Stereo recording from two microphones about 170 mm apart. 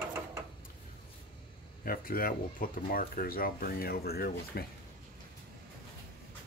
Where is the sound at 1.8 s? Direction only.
60° left (ahead or behind).